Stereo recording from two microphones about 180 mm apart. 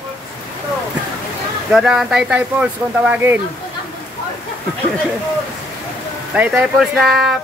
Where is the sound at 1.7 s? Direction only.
5° right (ahead or behind).